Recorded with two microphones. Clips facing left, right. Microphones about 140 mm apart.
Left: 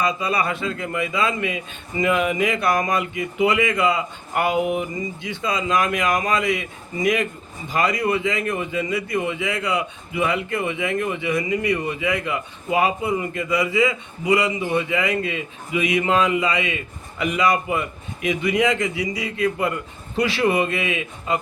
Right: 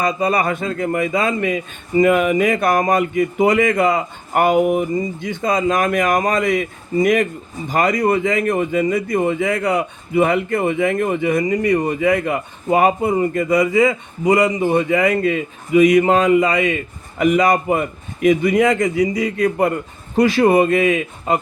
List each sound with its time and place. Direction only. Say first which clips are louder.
0.0 s speech: right 4 dB; 45° right (ahead or behind)